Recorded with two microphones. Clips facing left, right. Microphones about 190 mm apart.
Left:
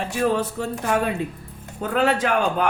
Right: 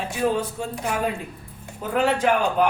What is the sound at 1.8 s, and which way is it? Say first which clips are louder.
Speech: even; 75° left (ahead or behind).